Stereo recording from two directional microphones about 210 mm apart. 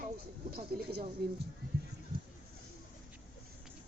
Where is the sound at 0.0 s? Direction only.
45° right (ahead or behind).